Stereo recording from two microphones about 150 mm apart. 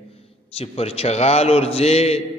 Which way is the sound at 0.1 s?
40° left (ahead or behind).